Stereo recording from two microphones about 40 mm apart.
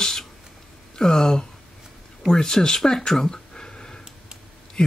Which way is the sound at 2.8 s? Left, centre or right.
Centre.